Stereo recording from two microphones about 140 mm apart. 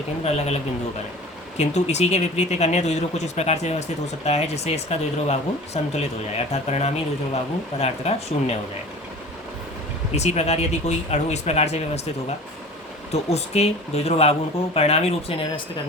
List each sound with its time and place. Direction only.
0.3 s speech: 50° left (ahead or behind)
1.5 s speech: 55° left (ahead or behind)
10.2 s speech: 50° left (ahead or behind)
13.3 s speech: 50° left (ahead or behind)